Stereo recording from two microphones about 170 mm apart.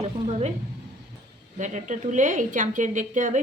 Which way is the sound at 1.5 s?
45° right (ahead or behind).